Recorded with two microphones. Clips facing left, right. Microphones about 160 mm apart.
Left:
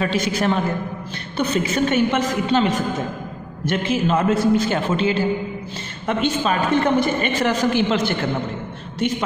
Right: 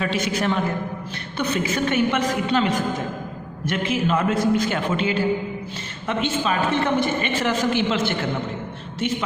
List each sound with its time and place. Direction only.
0.0 s a woman's voice: 35° left (ahead or behind)
6.0 s a woman's voice: 40° left (ahead or behind)